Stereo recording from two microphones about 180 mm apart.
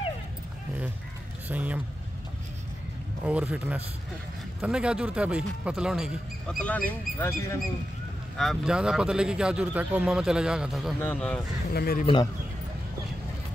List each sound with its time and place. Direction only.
1.5 s speech: 10° right (ahead or behind)
3.3 s a man's voice: 5° right (ahead or behind); by 7.3 s 10° left (ahead or behind)
8.4 s a man's voice: centre (ahead or behind)
11.7 s speech: 60° left (ahead or behind)